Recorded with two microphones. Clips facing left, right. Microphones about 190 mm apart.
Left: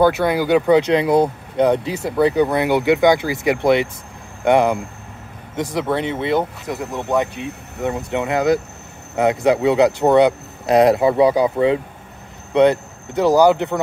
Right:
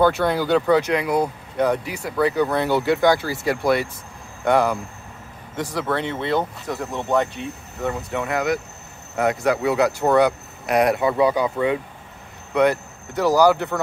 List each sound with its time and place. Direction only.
0.0 s speech: 10° left (ahead or behind)
7.8 s speech: 20° left (ahead or behind)